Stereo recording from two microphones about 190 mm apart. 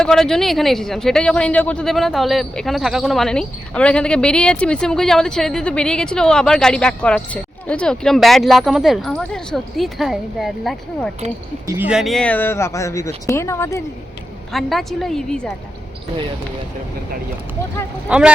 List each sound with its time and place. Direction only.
0.0 s a man's voice: 5° left (ahead or behind)
11.6 s speech: 15° right (ahead or behind)
11.9 s speech: centre (ahead or behind); by 13.8 s 15° left (ahead or behind)
14.5 s a man's voice: centre (ahead or behind)
18.1 s a man's voice: 5° right (ahead or behind)